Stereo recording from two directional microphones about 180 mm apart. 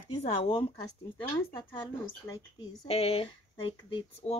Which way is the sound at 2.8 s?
35° left (ahead or behind).